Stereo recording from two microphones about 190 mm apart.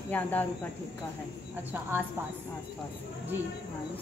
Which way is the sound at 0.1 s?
10° left (ahead or behind).